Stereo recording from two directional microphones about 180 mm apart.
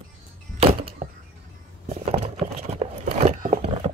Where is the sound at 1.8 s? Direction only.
35° right (ahead or behind).